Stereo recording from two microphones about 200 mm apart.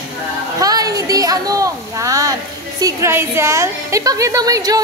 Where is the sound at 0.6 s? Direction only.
20° right (ahead or behind).